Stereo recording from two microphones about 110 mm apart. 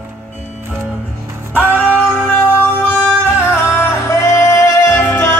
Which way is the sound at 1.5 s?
15° left (ahead or behind).